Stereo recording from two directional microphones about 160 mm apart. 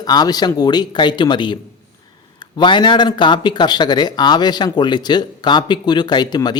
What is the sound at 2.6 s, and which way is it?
Speech, 30° left (ahead or behind).